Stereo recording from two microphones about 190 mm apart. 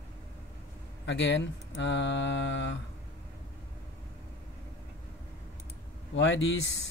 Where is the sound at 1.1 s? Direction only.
70° left (ahead or behind).